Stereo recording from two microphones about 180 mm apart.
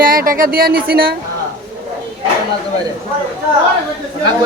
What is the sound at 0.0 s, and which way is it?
Speech, 50° right (ahead or behind).